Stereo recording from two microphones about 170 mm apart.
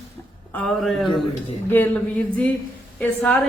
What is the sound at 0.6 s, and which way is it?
Speech, centre (ahead or behind).